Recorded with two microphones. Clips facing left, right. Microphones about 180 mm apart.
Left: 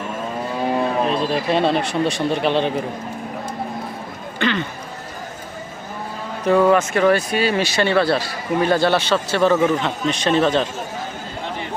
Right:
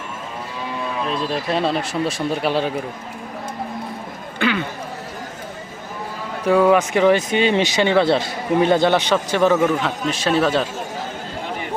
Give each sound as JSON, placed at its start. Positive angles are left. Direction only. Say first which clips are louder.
{"t": 0.6, "sound": "cattle", "louder": "left 7 dB", "side_deg": 50}
{"t": 1.3, "sound": "speech", "louder": "left 3 dB", "side_deg": 0}
{"t": 4.4, "sound": "a sound", "louder": "even", "side_deg": -10}
{"t": 6.4, "sound": "speech", "louder": "even", "side_deg": -10}
{"t": 9.7, "sound": "speech", "louder": "left 1 dB", "side_deg": -5}